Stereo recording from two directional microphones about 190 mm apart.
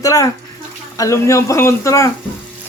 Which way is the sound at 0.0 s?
15° left (ahead or behind).